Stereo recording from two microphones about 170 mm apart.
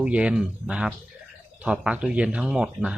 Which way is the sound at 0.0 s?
5° right (ahead or behind).